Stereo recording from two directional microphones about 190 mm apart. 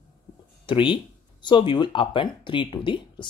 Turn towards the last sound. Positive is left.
turn(degrees=25)  # may be behind; listen again after turning